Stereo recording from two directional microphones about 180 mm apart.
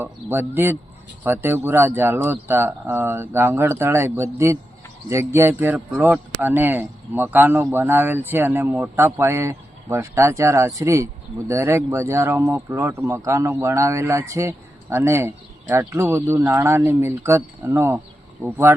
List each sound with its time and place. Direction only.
0.0 s speech: 10° right (ahead or behind)